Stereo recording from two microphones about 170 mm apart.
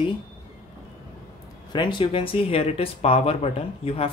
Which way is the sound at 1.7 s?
25° left (ahead or behind).